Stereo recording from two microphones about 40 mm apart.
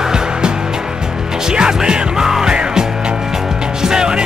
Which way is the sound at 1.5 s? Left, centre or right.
Centre.